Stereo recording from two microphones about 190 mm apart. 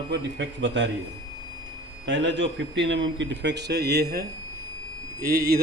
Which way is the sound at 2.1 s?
75° right (ahead or behind).